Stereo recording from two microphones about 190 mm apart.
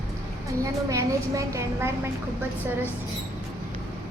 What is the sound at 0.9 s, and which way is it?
A woman's voice, 15° right (ahead or behind).